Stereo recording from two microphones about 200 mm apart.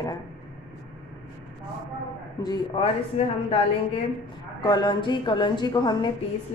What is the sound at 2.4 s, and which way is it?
Speech, 20° left (ahead or behind).